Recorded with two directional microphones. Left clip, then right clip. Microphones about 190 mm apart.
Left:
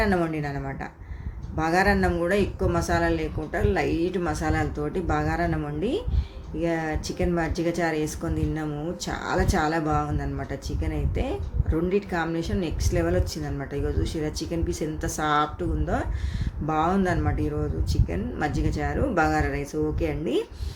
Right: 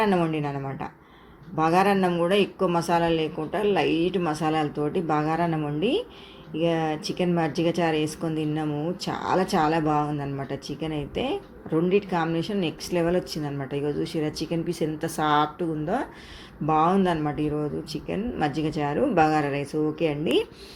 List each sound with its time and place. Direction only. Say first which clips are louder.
0.0 s speech: right 1 dB; 5° right (ahead or behind)